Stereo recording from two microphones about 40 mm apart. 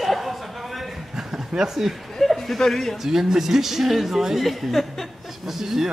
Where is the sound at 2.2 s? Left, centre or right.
Centre.